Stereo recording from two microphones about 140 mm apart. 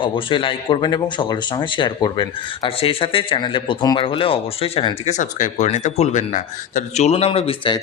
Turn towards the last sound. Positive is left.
turn(degrees=40)  # may be behind; listen again after turning